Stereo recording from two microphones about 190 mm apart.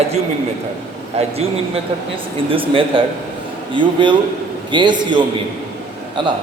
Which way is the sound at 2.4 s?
30° right (ahead or behind).